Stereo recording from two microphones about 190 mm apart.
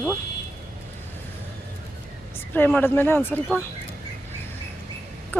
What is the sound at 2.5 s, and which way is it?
Speech, 10° left (ahead or behind).